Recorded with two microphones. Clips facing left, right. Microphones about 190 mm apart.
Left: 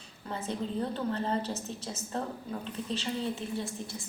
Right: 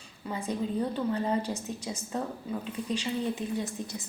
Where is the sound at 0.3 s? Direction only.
10° right (ahead or behind).